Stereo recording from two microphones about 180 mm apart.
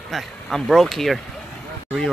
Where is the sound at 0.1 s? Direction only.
Centre (ahead or behind).